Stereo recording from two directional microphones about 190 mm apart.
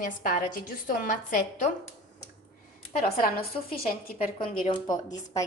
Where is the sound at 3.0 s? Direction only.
50° left (ahead or behind).